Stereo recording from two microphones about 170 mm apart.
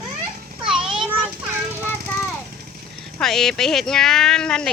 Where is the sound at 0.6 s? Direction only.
5° right (ahead or behind).